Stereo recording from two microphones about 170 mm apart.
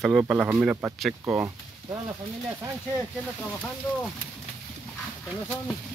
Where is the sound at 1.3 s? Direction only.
20° right (ahead or behind).